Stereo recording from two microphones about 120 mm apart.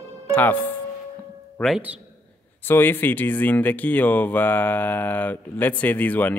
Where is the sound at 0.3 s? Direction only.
15° left (ahead or behind).